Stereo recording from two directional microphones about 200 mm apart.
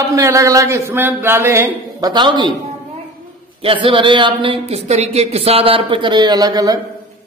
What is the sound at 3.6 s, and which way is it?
Speech, 25° right (ahead or behind).